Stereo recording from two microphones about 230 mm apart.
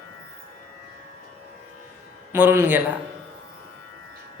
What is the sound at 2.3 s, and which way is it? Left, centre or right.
Speech, centre.